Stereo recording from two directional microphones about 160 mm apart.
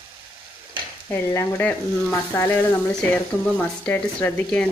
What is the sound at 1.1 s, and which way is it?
Speech, 15° left (ahead or behind).